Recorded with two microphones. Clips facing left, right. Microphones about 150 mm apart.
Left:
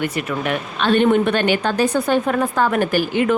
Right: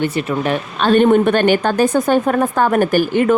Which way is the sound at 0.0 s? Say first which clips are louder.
Right 4 dB; 30° right (ahead or behind).